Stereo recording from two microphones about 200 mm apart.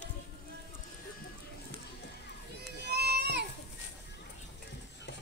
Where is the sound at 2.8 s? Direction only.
55° right (ahead or behind).